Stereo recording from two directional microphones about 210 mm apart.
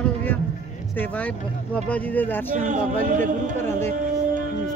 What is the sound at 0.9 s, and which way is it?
Speech, 5° left (ahead or behind).